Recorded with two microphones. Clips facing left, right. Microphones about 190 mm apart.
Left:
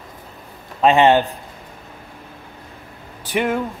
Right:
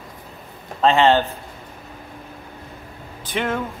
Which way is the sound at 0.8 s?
15° left (ahead or behind).